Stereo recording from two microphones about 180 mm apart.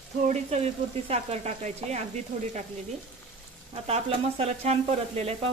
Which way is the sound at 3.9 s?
35° right (ahead or behind).